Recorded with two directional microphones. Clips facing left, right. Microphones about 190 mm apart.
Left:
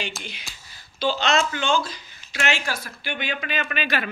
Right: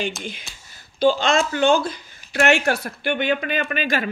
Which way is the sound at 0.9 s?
50° right (ahead or behind).